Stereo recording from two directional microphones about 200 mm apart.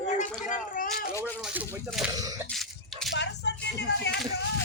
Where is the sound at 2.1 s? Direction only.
20° right (ahead or behind).